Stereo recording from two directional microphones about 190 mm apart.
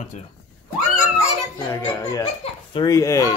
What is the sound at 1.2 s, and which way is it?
A child's voice, 20° left (ahead or behind).